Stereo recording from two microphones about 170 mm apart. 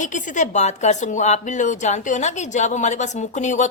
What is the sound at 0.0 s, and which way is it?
A woman's voice, 50° left (ahead or behind).